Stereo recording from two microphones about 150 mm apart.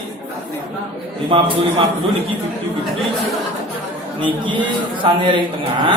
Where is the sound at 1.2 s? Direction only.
35° right (ahead or behind).